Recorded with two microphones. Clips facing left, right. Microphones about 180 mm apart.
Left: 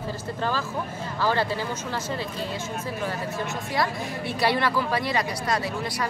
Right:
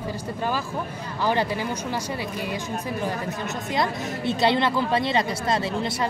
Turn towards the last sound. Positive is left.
turn(degrees=-25)  # may be behind; listen again after turning